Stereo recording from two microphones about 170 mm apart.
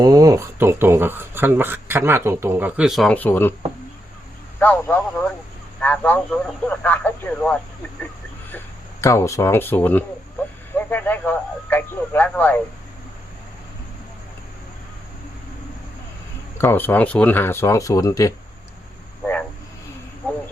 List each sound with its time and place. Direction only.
0.0 s speech: 20° right (ahead or behind); by 3.5 s 10° left (ahead or behind)
4.6 s speech: 10° left (ahead or behind)
16.6 s speech: 10° left (ahead or behind)
19.2 s speech: 10° left (ahead or behind)